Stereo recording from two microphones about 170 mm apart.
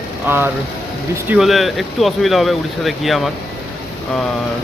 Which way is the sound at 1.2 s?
5° right (ahead or behind).